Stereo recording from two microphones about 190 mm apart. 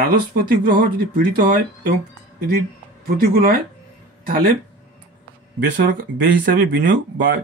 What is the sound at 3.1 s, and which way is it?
Speech, 50° right (ahead or behind).